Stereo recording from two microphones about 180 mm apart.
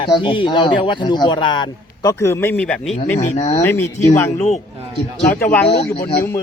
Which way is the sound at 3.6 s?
10° left (ahead or behind).